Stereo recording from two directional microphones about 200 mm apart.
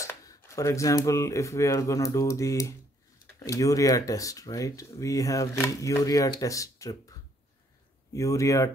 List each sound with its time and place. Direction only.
0.0 s speech: 15° left (ahead or behind)